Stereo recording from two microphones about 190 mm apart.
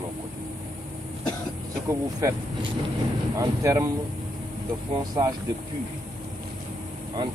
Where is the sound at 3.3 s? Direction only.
15° right (ahead or behind).